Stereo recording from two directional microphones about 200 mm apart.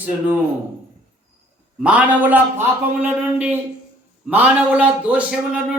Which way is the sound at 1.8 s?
5° right (ahead or behind).